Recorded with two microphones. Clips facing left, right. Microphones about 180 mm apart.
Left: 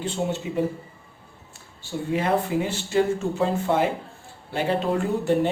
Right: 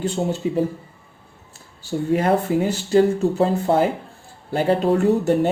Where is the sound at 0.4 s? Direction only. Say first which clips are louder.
Right 4 dB; 40° right (ahead or behind).